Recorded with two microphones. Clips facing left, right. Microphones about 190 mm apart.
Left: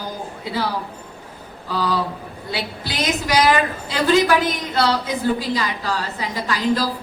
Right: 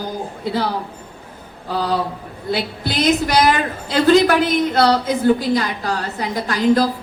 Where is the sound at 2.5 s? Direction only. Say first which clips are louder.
Right 6 dB; 45° right (ahead or behind).